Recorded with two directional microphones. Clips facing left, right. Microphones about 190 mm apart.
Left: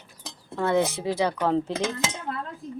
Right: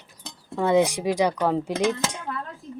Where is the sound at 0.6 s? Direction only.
15° right (ahead or behind).